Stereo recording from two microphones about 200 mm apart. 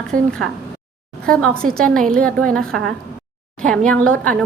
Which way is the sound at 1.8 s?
5° left (ahead or behind).